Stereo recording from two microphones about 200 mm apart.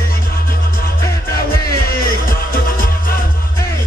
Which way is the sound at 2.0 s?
45° left (ahead or behind).